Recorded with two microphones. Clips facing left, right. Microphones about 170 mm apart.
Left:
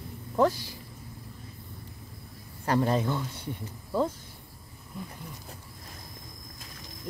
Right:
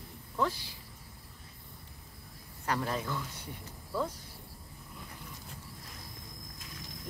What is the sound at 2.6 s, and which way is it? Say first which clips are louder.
Speech: left 8 dB; 30° left (ahead or behind).